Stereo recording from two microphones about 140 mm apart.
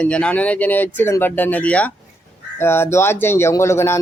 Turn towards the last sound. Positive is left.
turn(degrees=20)  # may be behind; listen again after turning